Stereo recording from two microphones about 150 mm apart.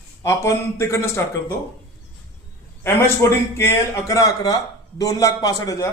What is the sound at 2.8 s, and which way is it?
A man's voice, 15° left (ahead or behind).